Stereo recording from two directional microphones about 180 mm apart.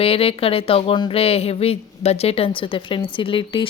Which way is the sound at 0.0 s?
30° left (ahead or behind).